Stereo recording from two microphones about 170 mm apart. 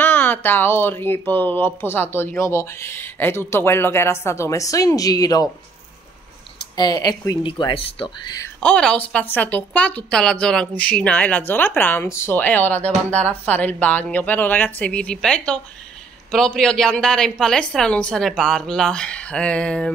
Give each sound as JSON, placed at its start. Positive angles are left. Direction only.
{"t": 0.0, "sound": "a woman's voice", "side_deg": 10}
{"t": 6.8, "sound": "speech", "side_deg": 25}
{"t": 8.5, "sound": "a woman's voice", "side_deg": 5}